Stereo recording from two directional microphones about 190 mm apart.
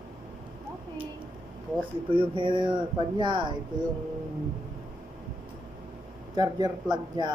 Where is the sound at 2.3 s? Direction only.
25° right (ahead or behind).